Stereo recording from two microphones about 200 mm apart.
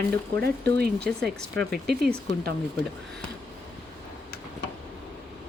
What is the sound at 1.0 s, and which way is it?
Speech, 5° left (ahead or behind).